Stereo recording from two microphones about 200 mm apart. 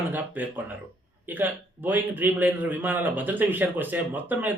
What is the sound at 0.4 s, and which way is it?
A man's voice, 10° right (ahead or behind).